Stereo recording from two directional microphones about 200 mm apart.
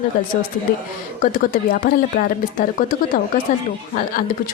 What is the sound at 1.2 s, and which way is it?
A woman's voice, 45° left (ahead or behind).